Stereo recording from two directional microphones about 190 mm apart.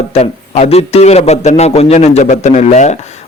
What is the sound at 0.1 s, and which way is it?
A man's voice, 35° left (ahead or behind).